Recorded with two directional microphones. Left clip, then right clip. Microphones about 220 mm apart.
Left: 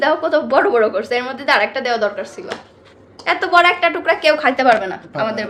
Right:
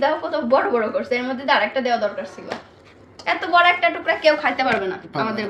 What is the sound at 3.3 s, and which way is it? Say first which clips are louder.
A woman's voice: left 3 dB; 55° left (ahead or behind).